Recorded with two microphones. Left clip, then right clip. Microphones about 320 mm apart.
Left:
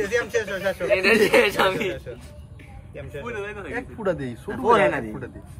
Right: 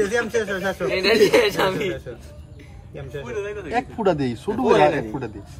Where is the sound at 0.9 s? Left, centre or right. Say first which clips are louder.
Right 1 dB; centre.